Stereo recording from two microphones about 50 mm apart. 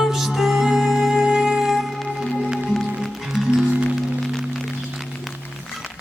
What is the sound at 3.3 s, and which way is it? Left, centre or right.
Music, centre.